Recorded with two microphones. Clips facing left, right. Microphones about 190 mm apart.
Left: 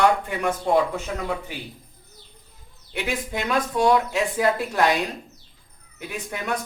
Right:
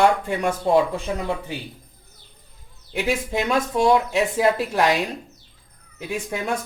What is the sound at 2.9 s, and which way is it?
Speech, 25° right (ahead or behind).